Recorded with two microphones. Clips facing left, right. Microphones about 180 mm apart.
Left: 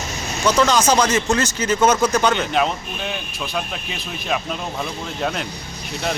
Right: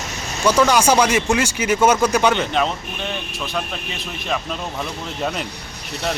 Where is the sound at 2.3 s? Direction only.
5° left (ahead or behind).